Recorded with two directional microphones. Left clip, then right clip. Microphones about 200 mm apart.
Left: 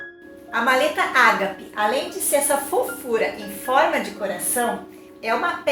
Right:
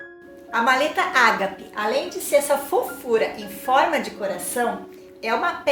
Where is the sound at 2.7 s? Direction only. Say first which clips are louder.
Right 1 dB; 40° right (ahead or behind).